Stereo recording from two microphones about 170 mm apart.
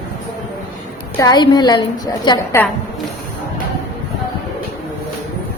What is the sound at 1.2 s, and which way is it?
A woman's voice, 25° left (ahead or behind).